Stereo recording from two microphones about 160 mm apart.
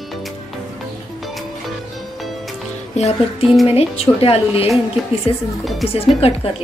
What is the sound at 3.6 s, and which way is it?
Speech, 40° left (ahead or behind).